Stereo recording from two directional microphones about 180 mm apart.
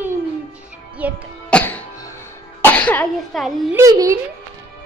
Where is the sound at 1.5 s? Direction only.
10° left (ahead or behind).